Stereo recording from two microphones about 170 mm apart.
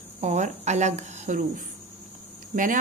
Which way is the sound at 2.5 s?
50° right (ahead or behind).